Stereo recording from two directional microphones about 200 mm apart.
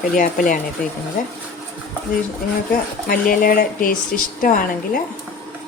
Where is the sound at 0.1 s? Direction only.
45° left (ahead or behind).